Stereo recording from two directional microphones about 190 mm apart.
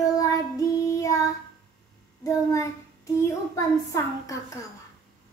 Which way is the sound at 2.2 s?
15° left (ahead or behind).